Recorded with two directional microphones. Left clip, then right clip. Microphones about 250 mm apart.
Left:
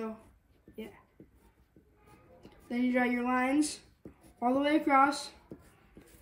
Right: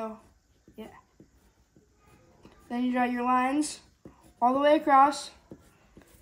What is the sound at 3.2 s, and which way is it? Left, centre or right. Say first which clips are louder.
A woman's voice: right 4 dB; centre.